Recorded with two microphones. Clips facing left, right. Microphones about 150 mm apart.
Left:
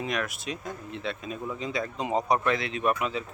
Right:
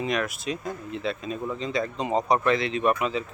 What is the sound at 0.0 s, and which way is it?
Speech, centre (ahead or behind).